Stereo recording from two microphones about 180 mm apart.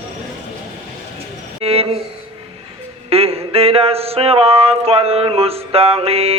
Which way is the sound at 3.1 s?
35° right (ahead or behind).